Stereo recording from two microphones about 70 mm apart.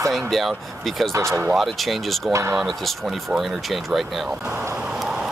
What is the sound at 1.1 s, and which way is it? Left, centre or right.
Speech, right.